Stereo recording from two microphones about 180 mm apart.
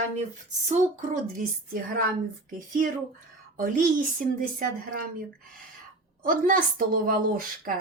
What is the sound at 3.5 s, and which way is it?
A woman's voice, 50° right (ahead or behind).